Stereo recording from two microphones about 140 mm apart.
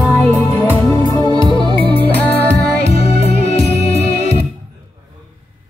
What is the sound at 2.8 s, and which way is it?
Music, 45° left (ahead or behind).